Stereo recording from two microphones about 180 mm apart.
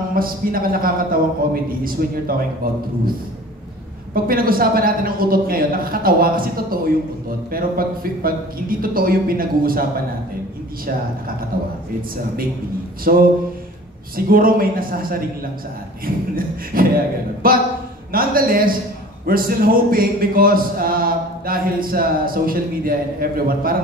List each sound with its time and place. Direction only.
0.1 s speech: 55° right (ahead or behind)
4.1 s speech: 55° right (ahead or behind)
11.5 s speech: 55° right (ahead or behind)
13.1 s a sound: 55° right (ahead or behind)
14.1 s speech: 55° right (ahead or behind)
16.3 s speech: 55° right (ahead or behind)